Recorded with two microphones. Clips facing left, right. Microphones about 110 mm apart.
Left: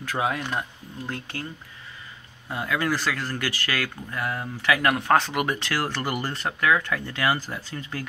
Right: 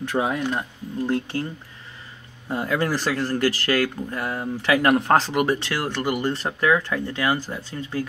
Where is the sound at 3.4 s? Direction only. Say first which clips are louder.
Right 9 dB; 35° right (ahead or behind).